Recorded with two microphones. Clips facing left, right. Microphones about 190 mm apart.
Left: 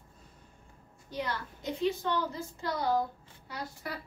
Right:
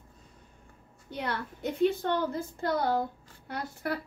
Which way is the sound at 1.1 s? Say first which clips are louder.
Right 2 dB; 60° right (ahead or behind).